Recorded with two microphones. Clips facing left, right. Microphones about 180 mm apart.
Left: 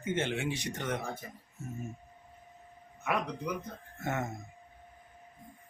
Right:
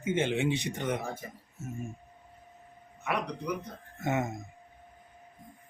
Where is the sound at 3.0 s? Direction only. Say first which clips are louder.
Even; 5° left (ahead or behind).